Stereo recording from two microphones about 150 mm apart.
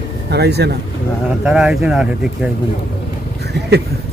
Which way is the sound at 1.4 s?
5° right (ahead or behind).